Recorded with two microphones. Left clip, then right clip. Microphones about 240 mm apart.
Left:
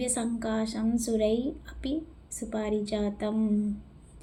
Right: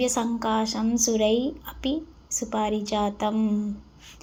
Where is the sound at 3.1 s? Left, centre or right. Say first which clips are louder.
Right 5 dB; centre.